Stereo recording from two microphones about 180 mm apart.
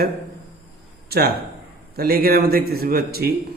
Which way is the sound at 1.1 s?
60° right (ahead or behind).